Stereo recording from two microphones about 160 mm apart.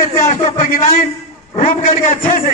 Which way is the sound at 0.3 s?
55° left (ahead or behind).